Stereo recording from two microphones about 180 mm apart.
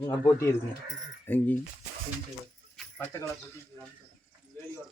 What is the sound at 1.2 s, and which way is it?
Speech, 10° left (ahead or behind).